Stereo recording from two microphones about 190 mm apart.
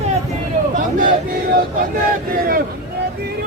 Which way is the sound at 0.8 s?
45° right (ahead or behind).